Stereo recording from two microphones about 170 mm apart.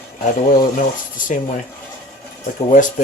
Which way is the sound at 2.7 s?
50° left (ahead or behind).